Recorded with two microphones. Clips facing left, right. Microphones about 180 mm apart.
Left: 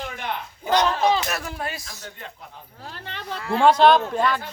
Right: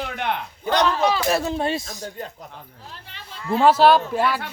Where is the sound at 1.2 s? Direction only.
25° right (ahead or behind).